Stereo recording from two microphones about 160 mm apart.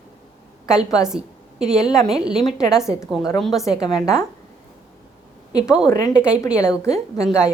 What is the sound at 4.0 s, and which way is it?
Speech, 20° left (ahead or behind).